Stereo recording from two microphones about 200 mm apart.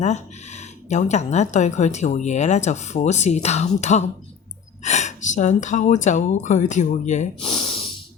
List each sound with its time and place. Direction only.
0.0 s speech: 35° left (ahead or behind)